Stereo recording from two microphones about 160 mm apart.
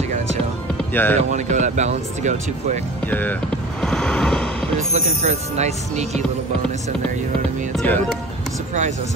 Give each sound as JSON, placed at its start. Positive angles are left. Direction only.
{"t": 0.9, "sound": "speech", "side_deg": 10}
{"t": 1.3, "sound": "speech", "side_deg": -50}
{"t": 3.1, "sound": "speech", "side_deg": 10}
{"t": 3.8, "sound": "a sound", "side_deg": 5}
{"t": 4.9, "sound": "speech", "side_deg": -45}
{"t": 7.7, "sound": "speech", "side_deg": 5}